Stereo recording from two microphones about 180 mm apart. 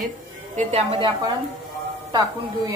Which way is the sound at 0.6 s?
35° right (ahead or behind).